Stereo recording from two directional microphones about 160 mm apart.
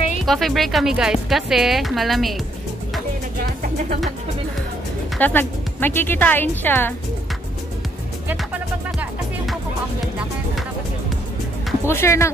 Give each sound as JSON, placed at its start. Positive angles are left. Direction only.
{"t": 0.2, "sound": "speech", "side_deg": 0}
{"t": 3.6, "sound": "music", "side_deg": -50}
{"t": 5.2, "sound": "speech", "side_deg": 10}
{"t": 11.9, "sound": "speech", "side_deg": 15}